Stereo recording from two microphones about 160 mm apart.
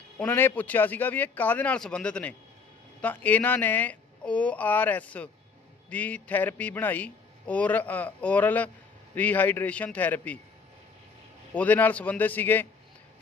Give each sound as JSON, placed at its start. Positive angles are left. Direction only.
{"t": 0.2, "sound": "a man's voice", "side_deg": 15}
{"t": 11.5, "sound": "a man's voice", "side_deg": 10}